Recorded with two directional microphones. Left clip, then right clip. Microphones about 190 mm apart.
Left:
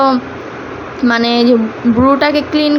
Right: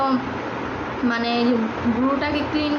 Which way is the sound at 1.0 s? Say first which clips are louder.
Left 11 dB; 45° left (ahead or behind).